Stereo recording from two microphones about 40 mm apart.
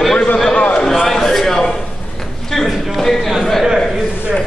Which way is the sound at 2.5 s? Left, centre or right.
Centre.